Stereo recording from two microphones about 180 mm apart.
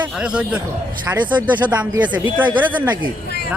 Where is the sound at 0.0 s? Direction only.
5° right (ahead or behind).